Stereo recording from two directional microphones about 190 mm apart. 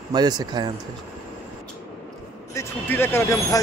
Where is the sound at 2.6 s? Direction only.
10° left (ahead or behind).